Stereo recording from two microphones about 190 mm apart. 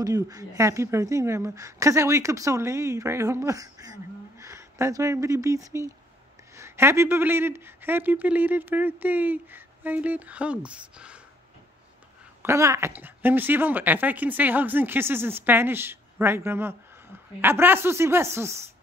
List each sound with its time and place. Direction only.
0.0 s a woman's voice: 20° right (ahead or behind)
12.4 s a woman's voice: 15° right (ahead or behind)